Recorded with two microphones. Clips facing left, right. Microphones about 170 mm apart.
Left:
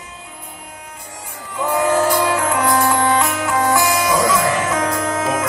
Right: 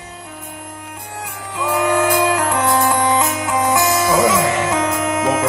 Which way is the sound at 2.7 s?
20° right (ahead or behind).